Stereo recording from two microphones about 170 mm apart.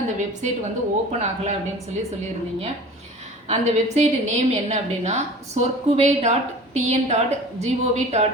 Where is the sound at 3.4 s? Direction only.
40° right (ahead or behind).